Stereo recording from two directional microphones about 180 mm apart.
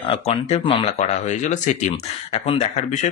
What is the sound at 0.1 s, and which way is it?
Speech, 35° left (ahead or behind).